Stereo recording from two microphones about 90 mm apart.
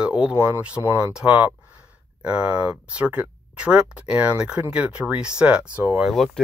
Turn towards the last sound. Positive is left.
turn(degrees=0)  # may be behind; listen again after turning